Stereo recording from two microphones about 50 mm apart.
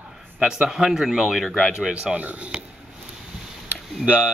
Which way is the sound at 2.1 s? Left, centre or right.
Right.